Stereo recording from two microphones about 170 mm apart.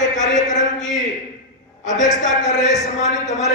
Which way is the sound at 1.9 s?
45° left (ahead or behind).